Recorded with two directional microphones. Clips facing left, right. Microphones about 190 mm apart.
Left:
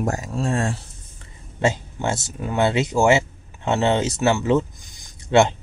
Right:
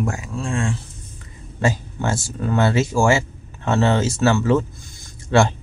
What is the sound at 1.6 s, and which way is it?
Speech, 25° left (ahead or behind).